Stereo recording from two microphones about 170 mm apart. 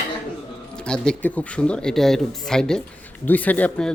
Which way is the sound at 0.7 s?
5° left (ahead or behind).